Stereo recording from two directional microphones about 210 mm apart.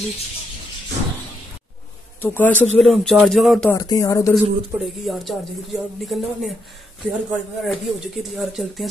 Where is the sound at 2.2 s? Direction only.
10° left (ahead or behind).